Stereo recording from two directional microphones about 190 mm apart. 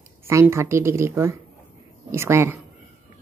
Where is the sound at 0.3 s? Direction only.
15° right (ahead or behind).